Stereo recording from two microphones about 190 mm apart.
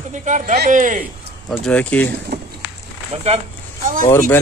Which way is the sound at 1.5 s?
5° left (ahead or behind).